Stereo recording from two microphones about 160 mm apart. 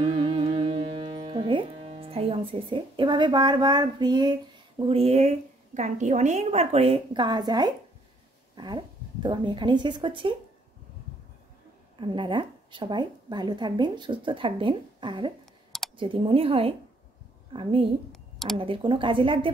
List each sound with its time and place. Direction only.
0.0 s music: 30° right (ahead or behind)
5.8 s a woman's voice: 50° right (ahead or behind); by 10.3 s 30° right (ahead or behind)
12.0 s a woman's voice: 30° right (ahead or behind)
18.1 s a sound: centre (ahead or behind)
18.6 s a woman's voice: 30° right (ahead or behind)